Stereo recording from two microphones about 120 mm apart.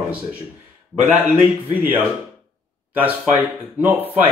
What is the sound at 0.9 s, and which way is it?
Speech, 15° right (ahead or behind).